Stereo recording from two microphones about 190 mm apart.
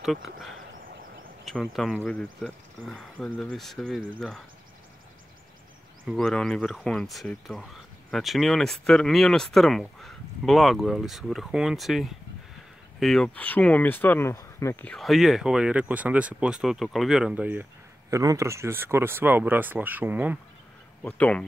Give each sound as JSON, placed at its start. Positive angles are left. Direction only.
{"t": 0.0, "sound": "speech", "side_deg": 0}
{"t": 6.0, "sound": "speech", "side_deg": 0}
{"t": 21.0, "sound": "speech", "side_deg": 5}